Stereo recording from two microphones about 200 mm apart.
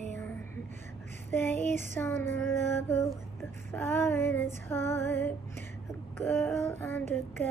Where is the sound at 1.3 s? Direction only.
10° left (ahead or behind).